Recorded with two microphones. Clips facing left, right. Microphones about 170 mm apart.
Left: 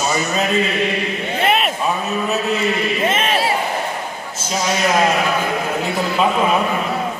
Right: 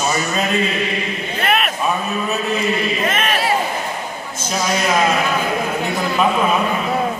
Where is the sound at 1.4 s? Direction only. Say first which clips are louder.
Left 1 dB; 25° left (ahead or behind).